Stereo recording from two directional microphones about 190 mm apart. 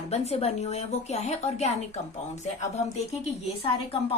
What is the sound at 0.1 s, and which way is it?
A woman's voice, 35° left (ahead or behind).